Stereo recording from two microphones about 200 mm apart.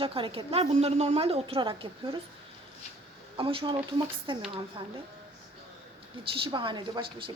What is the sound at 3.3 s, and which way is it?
Speech, 25° right (ahead or behind).